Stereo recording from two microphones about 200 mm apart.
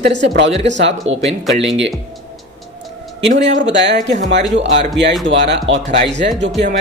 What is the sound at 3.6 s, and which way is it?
Speech, 65° right (ahead or behind).